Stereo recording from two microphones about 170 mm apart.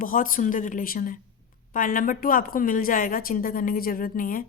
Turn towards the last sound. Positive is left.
turn(degrees=55)  # may be behind; listen again after turning